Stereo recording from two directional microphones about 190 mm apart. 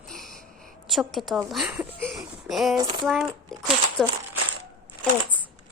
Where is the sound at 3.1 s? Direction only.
Centre (ahead or behind).